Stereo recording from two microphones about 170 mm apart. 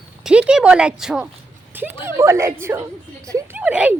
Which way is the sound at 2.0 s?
15° right (ahead or behind).